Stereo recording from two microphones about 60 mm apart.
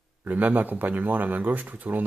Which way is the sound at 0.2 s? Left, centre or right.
Right.